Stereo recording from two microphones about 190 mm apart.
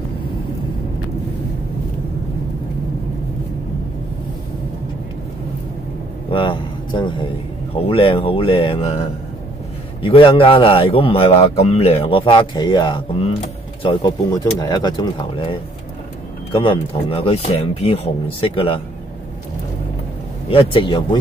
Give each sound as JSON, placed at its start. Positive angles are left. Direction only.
{"t": 6.3, "sound": "a sound", "side_deg": 25}
{"t": 7.7, "sound": "speech", "side_deg": 30}
{"t": 10.0, "sound": "a man's voice", "side_deg": 25}
{"t": 14.6, "sound": "a man's voice", "side_deg": 20}
{"t": 20.4, "sound": "a man's voice", "side_deg": 25}